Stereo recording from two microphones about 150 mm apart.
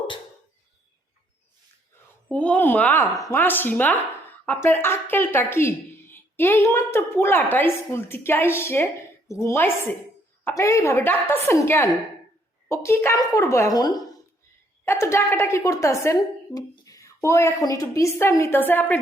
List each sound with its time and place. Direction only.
2.3 s a woman's voice: 10° left (ahead or behind)